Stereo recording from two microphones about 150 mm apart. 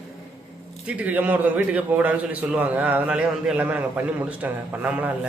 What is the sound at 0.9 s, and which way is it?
A man's voice, 10° right (ahead or behind).